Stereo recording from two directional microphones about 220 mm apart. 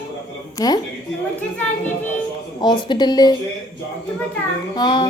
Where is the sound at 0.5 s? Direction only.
15° left (ahead or behind).